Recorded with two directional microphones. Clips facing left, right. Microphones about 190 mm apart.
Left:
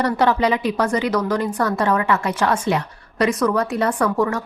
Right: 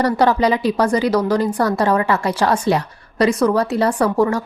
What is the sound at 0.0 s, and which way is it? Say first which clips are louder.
A woman's voice: right 2 dB; 35° right (ahead or behind).